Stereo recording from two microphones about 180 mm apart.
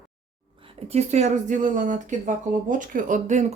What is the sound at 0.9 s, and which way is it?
Speech, 40° right (ahead or behind).